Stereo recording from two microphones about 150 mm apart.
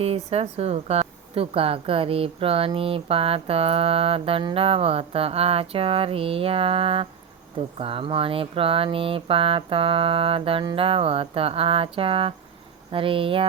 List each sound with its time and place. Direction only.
0.0 s a woman's voice: 45° right (ahead or behind)